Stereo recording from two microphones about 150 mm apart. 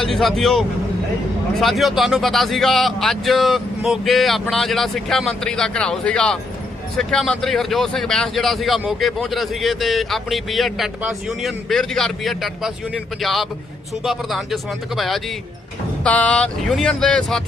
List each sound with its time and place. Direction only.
0.0 s speech: centre (ahead or behind)